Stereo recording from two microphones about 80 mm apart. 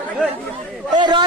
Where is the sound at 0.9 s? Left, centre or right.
Right.